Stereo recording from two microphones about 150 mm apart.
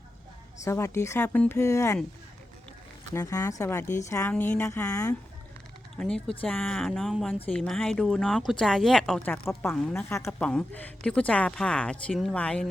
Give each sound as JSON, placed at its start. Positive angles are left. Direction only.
{"t": 0.6, "sound": "speech", "side_deg": 20}
{"t": 3.2, "sound": "speech", "side_deg": 20}
{"t": 6.0, "sound": "speech", "side_deg": 5}
{"t": 9.9, "sound": "speech", "side_deg": 20}
{"t": 10.4, "sound": "speech", "side_deg": 5}